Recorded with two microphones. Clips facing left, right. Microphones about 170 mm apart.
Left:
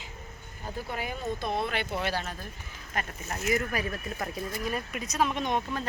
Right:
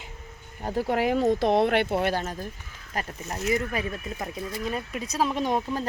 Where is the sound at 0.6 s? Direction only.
80° right; by 2.5 s 45° right (ahead or behind).